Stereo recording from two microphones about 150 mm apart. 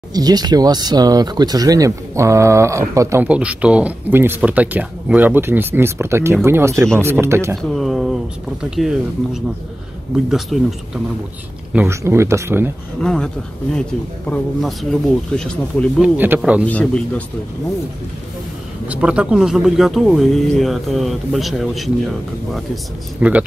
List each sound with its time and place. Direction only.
0.1 s speech: 25° right (ahead or behind)
3.3 s speech: 10° right (ahead or behind)
7.5 s speech: centre (ahead or behind)
11.7 s speech: 15° right (ahead or behind)
13.0 s speech: 5° left (ahead or behind)
14.3 s speech: centre (ahead or behind)
16.0 s speech: 10° right (ahead or behind)
16.6 s a man's voice: 10° left (ahead or behind)
18.9 s speech: 5° right (ahead or behind)
23.2 s speech: 10° right (ahead or behind)